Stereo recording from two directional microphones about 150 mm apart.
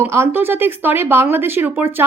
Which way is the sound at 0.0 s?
15° right (ahead or behind).